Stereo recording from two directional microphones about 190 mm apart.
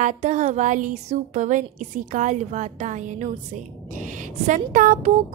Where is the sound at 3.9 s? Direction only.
40° right (ahead or behind).